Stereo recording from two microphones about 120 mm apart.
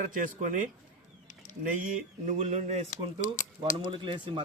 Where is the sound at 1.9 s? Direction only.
80° right.